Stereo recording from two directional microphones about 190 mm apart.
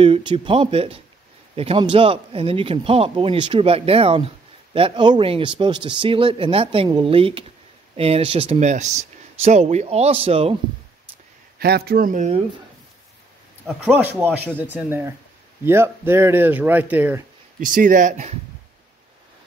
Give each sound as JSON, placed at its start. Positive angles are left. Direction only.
{"t": 0.0, "sound": "speech", "side_deg": -25}
{"t": 11.5, "sound": "speech", "side_deg": -55}
{"t": 13.7, "sound": "speech", "side_deg": -10}
{"t": 17.6, "sound": "speech", "side_deg": -45}